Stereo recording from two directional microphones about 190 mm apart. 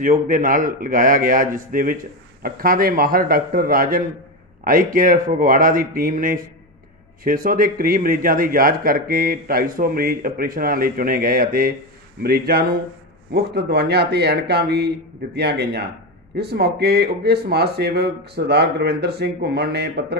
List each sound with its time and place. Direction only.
0.0 s a man's voice: 45° right (ahead or behind)